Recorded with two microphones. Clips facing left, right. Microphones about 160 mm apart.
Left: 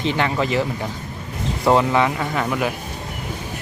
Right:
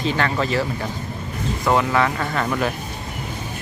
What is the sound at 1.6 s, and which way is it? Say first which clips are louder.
Speech: left 2 dB; 25° left (ahead or behind).